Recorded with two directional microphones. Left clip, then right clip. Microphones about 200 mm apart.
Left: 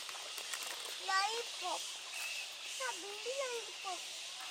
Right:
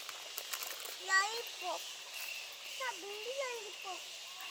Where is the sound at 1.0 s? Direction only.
10° right (ahead or behind).